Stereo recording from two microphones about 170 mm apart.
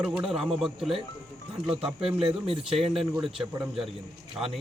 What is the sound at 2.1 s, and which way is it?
Speech, 35° right (ahead or behind).